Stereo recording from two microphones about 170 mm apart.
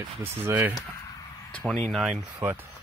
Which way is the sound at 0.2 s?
15° right (ahead or behind).